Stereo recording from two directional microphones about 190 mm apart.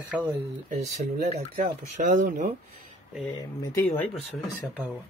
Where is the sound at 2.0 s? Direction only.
45° right (ahead or behind).